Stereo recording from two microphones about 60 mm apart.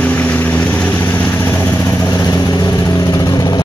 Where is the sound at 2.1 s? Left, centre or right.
Left.